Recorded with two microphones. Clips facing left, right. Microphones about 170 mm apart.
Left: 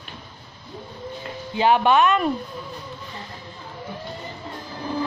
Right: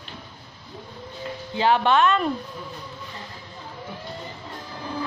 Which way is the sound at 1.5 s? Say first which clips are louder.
Left 2 dB; 15° left (ahead or behind).